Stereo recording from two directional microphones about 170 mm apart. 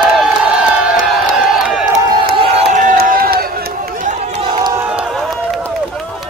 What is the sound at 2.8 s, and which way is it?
Crowd, 55° right (ahead or behind).